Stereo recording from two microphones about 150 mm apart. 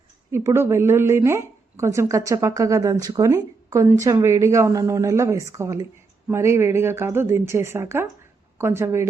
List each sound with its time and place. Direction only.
0.3 s a woman's voice: 15° right (ahead or behind)